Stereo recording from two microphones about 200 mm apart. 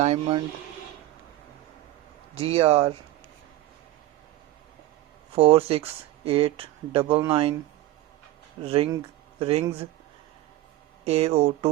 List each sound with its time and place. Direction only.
0.0 s speech: 35° right (ahead or behind)
2.3 s speech: 30° right (ahead or behind)
5.3 s speech: 30° right (ahead or behind)
8.6 s speech: 30° right (ahead or behind)
11.0 s speech: 30° right (ahead or behind)